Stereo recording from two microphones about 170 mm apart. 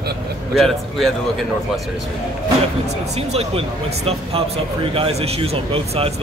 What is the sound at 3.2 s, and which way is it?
Speech, 35° right (ahead or behind).